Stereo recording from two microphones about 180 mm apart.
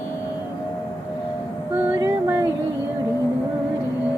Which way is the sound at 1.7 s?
10° right (ahead or behind).